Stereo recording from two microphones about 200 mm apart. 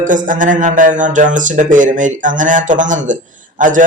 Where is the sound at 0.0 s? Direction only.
40° right (ahead or behind).